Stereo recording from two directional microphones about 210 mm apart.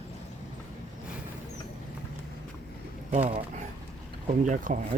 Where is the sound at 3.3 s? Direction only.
30° right (ahead or behind).